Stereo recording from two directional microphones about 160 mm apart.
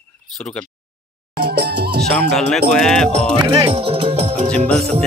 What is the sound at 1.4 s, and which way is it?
Music, 90° right.